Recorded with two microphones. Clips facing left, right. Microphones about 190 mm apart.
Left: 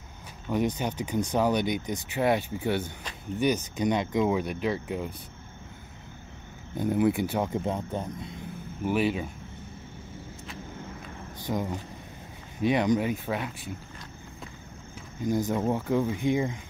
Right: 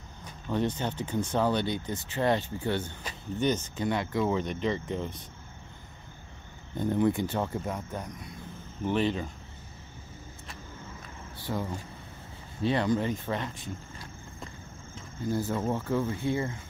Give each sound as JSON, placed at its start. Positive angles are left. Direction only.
{"t": 0.5, "sound": "speech", "side_deg": 10}
{"t": 6.8, "sound": "speech", "side_deg": 10}
{"t": 8.8, "sound": "speech", "side_deg": 10}
{"t": 11.4, "sound": "speech", "side_deg": 15}
{"t": 15.1, "sound": "speech", "side_deg": 15}